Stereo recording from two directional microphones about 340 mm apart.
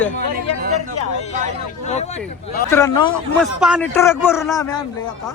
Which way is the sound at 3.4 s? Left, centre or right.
Centre.